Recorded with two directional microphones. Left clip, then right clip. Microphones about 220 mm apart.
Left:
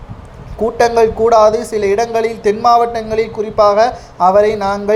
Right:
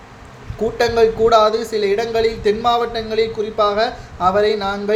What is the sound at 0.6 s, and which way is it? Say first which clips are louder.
Speech: left 4 dB; 15° left (ahead or behind).